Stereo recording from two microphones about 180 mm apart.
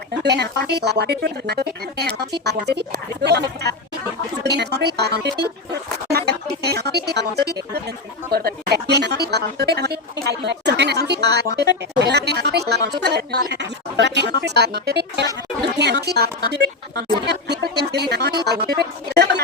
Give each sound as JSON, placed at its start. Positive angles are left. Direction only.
{"t": 0.1, "sound": "speech", "side_deg": -70}
{"t": 6.6, "sound": "speech", "side_deg": -65}